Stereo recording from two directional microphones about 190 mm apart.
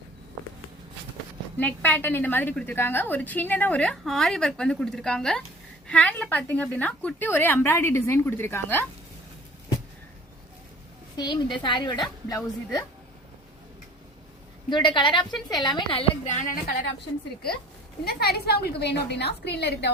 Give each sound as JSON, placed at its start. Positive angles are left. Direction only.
{"t": 1.5, "sound": "a woman's voice", "side_deg": 10}
{"t": 11.2, "sound": "a woman's voice", "side_deg": 25}
{"t": 14.7, "sound": "a woman's voice", "side_deg": 25}
{"t": 18.0, "sound": "a woman's voice", "side_deg": 55}